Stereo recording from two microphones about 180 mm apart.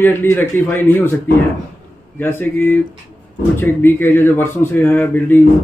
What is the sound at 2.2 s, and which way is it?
Speech, 10° left (ahead or behind).